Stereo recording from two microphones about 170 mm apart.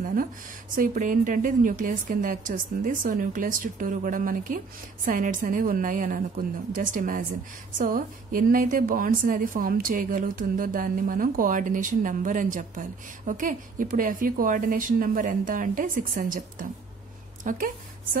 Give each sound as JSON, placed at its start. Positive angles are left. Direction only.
{"t": 0.0, "sound": "a woman's voice", "side_deg": -55}